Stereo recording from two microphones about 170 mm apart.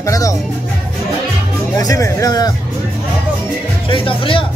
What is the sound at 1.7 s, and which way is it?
Speech, 20° left (ahead or behind).